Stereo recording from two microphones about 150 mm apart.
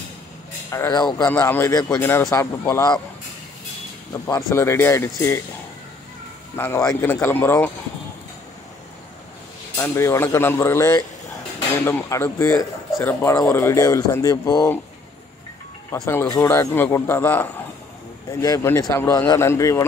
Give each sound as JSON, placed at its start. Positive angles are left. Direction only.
{"t": 0.7, "sound": "speech", "side_deg": 20}
{"t": 4.1, "sound": "speech", "side_deg": 20}
{"t": 6.5, "sound": "speech", "side_deg": 15}
{"t": 9.8, "sound": "speech", "side_deg": 20}
{"t": 15.9, "sound": "speech", "side_deg": 15}
{"t": 18.3, "sound": "speech", "side_deg": 25}